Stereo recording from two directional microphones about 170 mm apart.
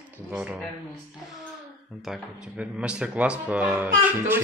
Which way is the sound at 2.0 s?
5° right (ahead or behind).